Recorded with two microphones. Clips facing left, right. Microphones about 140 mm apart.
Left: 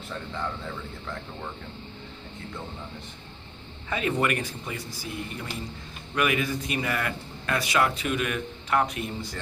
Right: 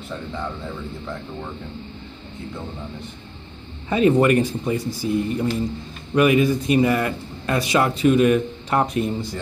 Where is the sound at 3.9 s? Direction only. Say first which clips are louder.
Right 10 dB; 30° right (ahead or behind).